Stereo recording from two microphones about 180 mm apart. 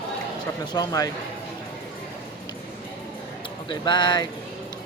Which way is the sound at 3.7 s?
25° left (ahead or behind).